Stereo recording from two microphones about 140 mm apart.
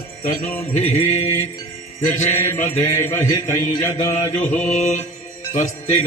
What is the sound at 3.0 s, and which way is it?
Speech, 15° left (ahead or behind).